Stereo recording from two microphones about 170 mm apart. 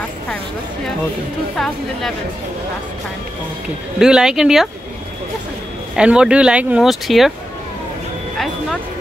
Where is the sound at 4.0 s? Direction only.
5° right (ahead or behind).